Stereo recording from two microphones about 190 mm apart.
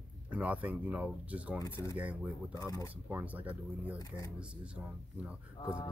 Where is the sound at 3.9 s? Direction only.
15° left (ahead or behind).